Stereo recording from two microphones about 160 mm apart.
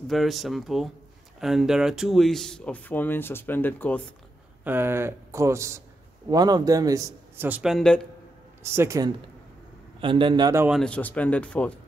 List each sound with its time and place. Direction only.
0.1 s speech: centre (ahead or behind)
4.6 s a man's voice: 15° right (ahead or behind)
7.4 s speech: 5° right (ahead or behind)
8.7 s a man's voice: 20° right (ahead or behind)
9.9 s a man's voice: 30° right (ahead or behind)
10.7 s speech: 5° left (ahead or behind)